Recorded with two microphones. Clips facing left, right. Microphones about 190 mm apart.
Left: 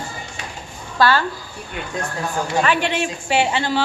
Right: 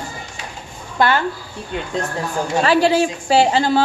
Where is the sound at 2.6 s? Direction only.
35° right (ahead or behind).